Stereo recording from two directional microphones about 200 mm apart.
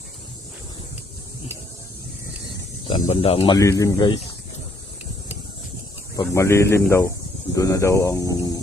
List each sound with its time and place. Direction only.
2.9 s speech: 30° left (ahead or behind)
3.5 s speech: 15° left (ahead or behind)
6.1 s speech: 15° left (ahead or behind)